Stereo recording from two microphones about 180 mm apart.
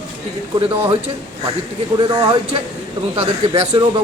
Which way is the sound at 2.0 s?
25° right (ahead or behind).